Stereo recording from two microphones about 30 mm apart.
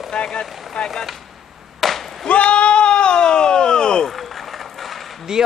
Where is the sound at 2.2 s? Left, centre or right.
Left.